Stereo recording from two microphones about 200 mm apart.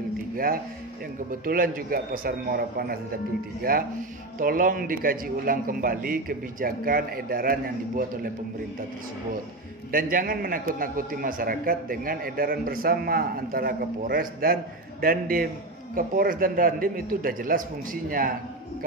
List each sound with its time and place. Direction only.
1.3 s a man's voice: 45° right (ahead or behind)
9.8 s a man's voice: 45° right (ahead or behind)